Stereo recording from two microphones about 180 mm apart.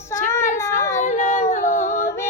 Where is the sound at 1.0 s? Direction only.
40° left (ahead or behind).